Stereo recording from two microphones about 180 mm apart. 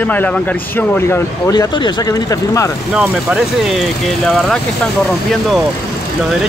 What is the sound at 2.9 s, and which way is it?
Speech, 5° right (ahead or behind).